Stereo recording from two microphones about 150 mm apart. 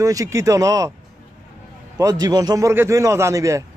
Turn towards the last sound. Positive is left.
turn(degrees=-20)  # may be behind; listen again after turning